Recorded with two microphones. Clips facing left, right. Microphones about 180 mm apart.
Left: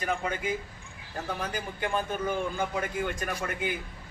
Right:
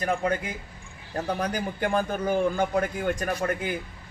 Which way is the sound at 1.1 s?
40° right (ahead or behind).